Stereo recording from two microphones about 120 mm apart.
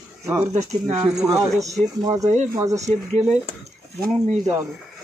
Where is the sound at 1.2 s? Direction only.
30° right (ahead or behind).